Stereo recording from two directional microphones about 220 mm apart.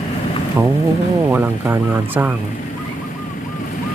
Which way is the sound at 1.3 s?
10° right (ahead or behind).